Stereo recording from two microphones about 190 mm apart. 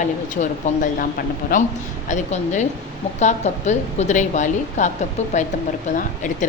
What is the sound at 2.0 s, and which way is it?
A woman's voice, 40° left (ahead or behind).